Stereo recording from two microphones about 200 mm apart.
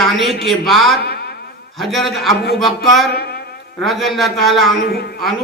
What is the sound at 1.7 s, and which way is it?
Speech, centre (ahead or behind).